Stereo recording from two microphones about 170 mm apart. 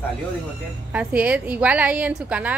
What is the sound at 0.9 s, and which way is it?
A woman's voice, 10° right (ahead or behind).